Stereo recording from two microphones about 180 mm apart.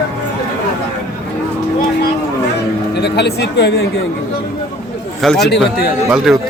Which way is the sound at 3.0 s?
70° left (ahead or behind).